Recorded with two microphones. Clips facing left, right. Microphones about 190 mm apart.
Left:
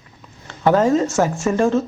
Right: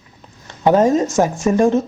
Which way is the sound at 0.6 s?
15° right (ahead or behind).